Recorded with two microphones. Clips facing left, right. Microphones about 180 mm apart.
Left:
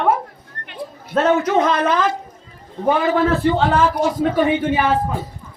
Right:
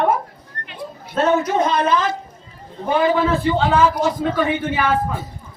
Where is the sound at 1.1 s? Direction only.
70° left (ahead or behind).